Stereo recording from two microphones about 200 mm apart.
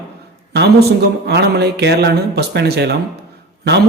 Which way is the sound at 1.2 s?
55° right (ahead or behind).